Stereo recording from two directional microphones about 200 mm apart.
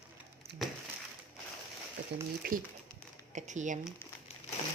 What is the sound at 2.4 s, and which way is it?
Speech, 50° right (ahead or behind).